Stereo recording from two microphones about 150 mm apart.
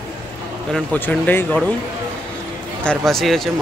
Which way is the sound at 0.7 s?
10° left (ahead or behind).